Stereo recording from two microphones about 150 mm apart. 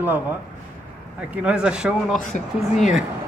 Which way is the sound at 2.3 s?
55° left (ahead or behind).